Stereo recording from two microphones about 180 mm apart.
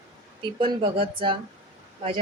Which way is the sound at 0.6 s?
30° right (ahead or behind).